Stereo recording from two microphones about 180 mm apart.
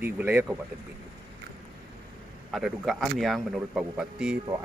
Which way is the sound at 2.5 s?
Centre (ahead or behind).